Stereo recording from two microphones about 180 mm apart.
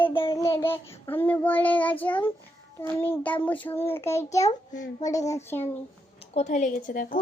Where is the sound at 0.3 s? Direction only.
15° left (ahead or behind).